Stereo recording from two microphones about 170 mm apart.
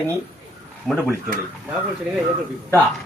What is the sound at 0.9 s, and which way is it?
Speech, centre (ahead or behind).